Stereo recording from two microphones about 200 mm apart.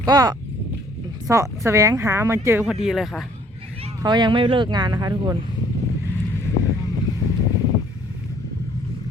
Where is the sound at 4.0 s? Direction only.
20° right (ahead or behind).